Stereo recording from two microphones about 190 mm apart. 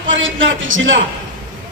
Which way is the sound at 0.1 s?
90° right.